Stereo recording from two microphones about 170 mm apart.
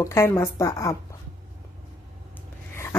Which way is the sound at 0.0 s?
15° left (ahead or behind).